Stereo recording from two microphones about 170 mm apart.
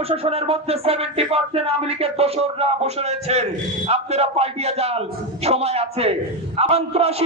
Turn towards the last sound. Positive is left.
turn(degrees=-35)  # may be behind; listen again after turning